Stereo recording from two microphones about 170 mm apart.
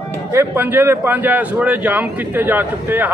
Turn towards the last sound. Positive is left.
turn(degrees=-10)  # may be behind; listen again after turning